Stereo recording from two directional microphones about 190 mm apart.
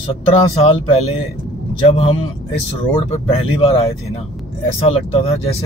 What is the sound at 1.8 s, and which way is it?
Speech, 30° left (ahead or behind).